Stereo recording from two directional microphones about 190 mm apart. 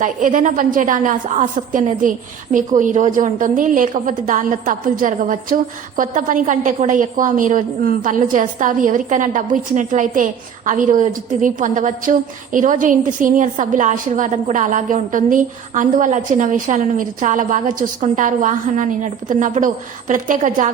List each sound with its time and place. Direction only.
0.0 s a woman's voice: 45° right (ahead or behind)